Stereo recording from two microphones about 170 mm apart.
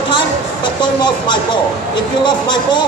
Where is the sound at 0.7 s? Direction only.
25° left (ahead or behind).